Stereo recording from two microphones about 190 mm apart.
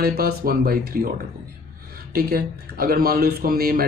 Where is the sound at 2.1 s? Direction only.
55° right (ahead or behind).